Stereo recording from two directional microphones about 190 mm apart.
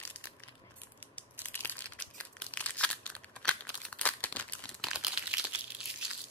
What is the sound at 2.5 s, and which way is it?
Crumpling, 5° left (ahead or behind).